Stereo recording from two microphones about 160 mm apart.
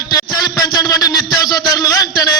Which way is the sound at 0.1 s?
25° left (ahead or behind).